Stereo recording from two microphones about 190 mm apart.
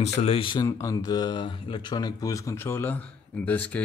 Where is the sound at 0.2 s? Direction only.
30° left (ahead or behind).